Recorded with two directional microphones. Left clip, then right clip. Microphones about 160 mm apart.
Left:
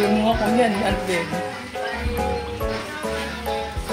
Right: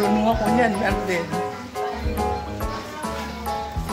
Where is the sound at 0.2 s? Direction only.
20° left (ahead or behind).